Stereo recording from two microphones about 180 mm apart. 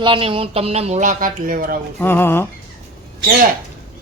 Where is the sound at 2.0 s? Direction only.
10° left (ahead or behind).